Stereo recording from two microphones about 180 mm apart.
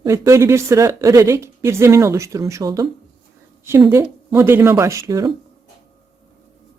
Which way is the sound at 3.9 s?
15° right (ahead or behind).